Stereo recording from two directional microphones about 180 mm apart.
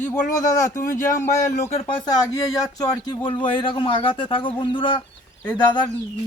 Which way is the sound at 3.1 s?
25° left (ahead or behind).